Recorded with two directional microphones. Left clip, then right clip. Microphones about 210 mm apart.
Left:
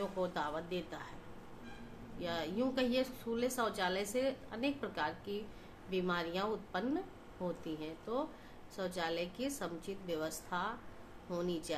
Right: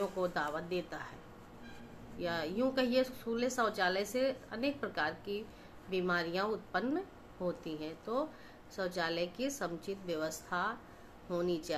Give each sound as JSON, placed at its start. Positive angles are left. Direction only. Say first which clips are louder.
{"t": 0.2, "sound": "a woman's voice", "louder": "right 2 dB", "side_deg": -15}
{"t": 2.1, "sound": "a woman's voice", "louder": "right 2 dB", "side_deg": -15}